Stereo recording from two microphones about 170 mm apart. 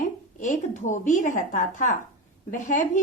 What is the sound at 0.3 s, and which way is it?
A woman's voice, 45° left (ahead or behind).